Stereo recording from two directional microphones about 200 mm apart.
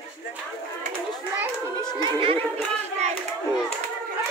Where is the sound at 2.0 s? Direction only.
25° right (ahead or behind).